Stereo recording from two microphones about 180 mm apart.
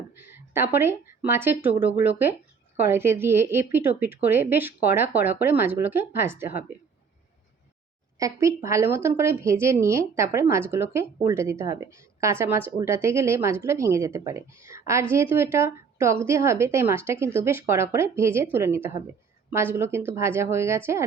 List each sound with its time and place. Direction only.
0.2 s speech: 10° right (ahead or behind)
8.2 s speech: 15° right (ahead or behind)